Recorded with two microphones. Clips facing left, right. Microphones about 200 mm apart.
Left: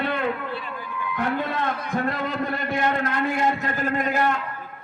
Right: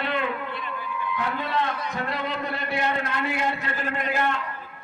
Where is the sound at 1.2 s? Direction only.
50° left (ahead or behind).